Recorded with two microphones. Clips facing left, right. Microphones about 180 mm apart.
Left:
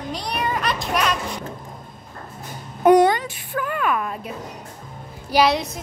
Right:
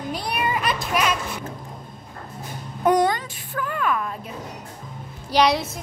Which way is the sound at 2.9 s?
70° left (ahead or behind).